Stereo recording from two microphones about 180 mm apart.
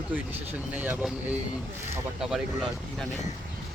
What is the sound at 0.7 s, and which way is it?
Speech, 10° right (ahead or behind).